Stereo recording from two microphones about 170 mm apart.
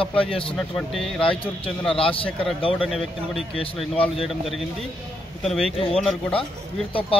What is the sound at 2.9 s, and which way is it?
Speech, centre (ahead or behind).